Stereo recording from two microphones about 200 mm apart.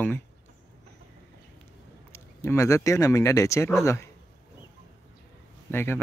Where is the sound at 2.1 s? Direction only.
15° left (ahead or behind).